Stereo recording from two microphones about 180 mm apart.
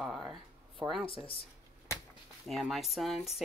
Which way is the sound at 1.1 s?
30° left (ahead or behind).